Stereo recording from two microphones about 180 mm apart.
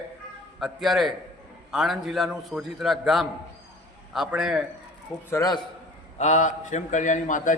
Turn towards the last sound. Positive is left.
turn(degrees=45)  # may be behind; listen again after turning